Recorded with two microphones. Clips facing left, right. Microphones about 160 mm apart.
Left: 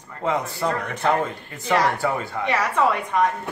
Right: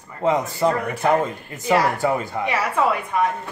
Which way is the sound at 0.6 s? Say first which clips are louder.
Right 4 dB; 10° right (ahead or behind).